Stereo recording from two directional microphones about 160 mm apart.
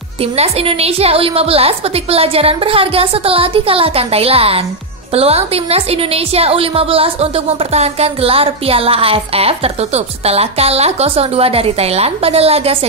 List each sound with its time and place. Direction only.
0.2 s a woman's voice: 40° right (ahead or behind)